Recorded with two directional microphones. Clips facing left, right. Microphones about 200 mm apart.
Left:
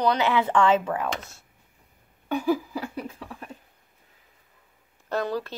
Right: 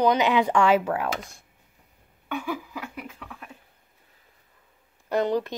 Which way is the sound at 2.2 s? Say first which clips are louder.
Left 7 dB; 40° left (ahead or behind).